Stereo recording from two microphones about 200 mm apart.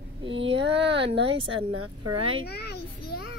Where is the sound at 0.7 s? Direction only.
30° right (ahead or behind).